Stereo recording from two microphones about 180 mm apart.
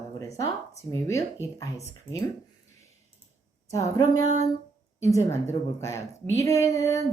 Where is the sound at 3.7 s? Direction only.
20° left (ahead or behind).